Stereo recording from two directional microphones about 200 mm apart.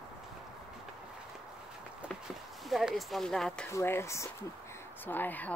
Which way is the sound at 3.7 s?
15° left (ahead or behind).